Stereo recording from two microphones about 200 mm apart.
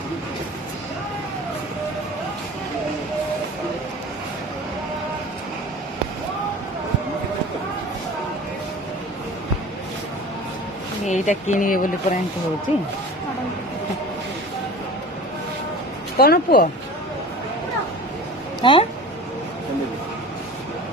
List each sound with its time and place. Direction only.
11.0 s speech: 35° left (ahead or behind)
12.7 s speech: 30° left (ahead or behind)
16.1 s speech: 50° left (ahead or behind)
18.6 s speech: 25° left (ahead or behind)